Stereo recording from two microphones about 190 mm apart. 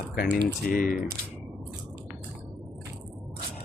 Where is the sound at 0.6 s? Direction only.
50° left (ahead or behind).